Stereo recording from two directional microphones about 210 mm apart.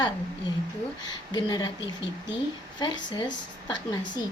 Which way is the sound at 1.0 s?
20° left (ahead or behind).